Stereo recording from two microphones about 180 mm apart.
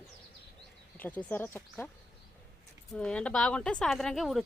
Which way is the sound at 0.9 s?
10° left (ahead or behind).